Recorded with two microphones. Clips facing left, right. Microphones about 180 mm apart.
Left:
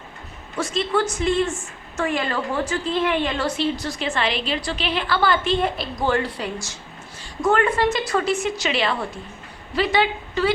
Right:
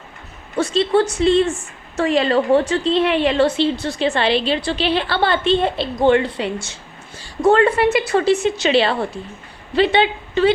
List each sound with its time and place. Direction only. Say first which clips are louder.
0.5 s a woman's voice: right 6 dB; 30° right (ahead or behind)